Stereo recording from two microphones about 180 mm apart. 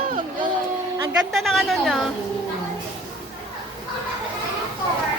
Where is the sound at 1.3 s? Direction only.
Centre (ahead or behind).